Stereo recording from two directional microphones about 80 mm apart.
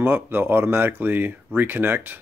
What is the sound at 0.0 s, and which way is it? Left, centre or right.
Speech, right.